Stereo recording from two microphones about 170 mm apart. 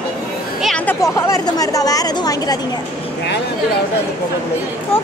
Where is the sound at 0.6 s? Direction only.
Centre (ahead or behind).